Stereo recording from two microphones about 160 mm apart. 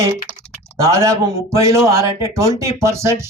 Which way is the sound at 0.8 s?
20° right (ahead or behind).